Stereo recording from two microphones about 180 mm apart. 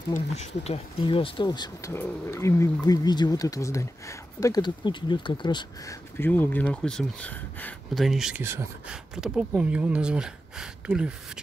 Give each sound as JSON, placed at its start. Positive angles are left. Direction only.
{"t": 0.1, "sound": "speech", "side_deg": 40}
{"t": 6.1, "sound": "speech", "side_deg": 10}